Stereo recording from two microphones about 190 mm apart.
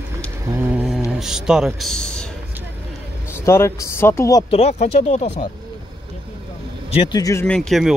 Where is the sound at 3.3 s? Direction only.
15° left (ahead or behind).